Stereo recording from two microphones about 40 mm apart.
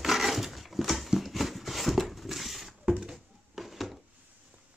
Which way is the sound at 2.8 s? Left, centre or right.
Centre.